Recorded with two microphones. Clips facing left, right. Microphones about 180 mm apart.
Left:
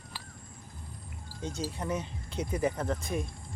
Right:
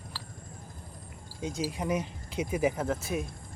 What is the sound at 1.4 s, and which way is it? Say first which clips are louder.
Speech: right 3 dB; 10° right (ahead or behind).